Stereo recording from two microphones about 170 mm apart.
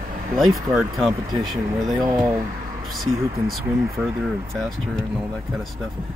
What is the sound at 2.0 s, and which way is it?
Speech, 15° right (ahead or behind).